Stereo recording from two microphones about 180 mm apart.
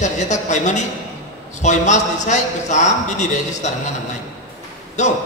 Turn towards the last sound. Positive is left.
turn(degrees=40)  # may be behind; listen again after turning